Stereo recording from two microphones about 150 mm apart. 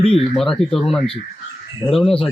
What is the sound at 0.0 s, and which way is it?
Speech, 40° left (ahead or behind).